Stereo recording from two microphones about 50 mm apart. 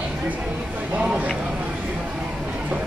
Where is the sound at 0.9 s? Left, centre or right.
Right.